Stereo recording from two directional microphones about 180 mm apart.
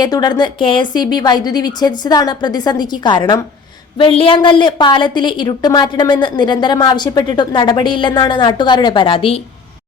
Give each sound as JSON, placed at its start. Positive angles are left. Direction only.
{"t": 0.0, "sound": "a woman's voice", "side_deg": 20}